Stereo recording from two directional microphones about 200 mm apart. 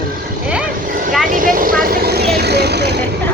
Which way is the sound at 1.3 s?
45° right (ahead or behind).